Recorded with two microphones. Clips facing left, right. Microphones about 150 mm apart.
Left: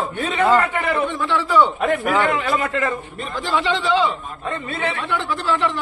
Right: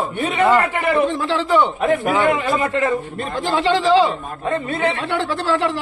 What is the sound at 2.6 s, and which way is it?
Speech, 30° right (ahead or behind).